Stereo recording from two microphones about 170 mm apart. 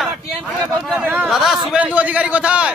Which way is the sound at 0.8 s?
10° right (ahead or behind).